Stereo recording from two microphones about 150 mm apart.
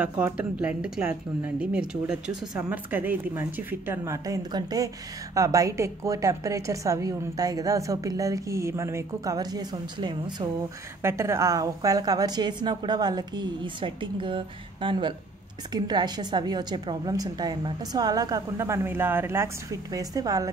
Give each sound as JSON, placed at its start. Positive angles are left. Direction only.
{"t": 0.2, "sound": "speech", "side_deg": -10}
{"t": 11.0, "sound": "speech", "side_deg": -20}